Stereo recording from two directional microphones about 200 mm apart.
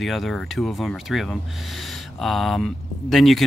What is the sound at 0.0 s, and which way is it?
Speech, centre (ahead or behind).